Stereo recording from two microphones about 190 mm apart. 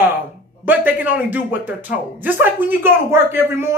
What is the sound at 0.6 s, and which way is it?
Speech, 10° right (ahead or behind).